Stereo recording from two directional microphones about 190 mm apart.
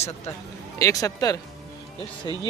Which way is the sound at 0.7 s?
15° left (ahead or behind).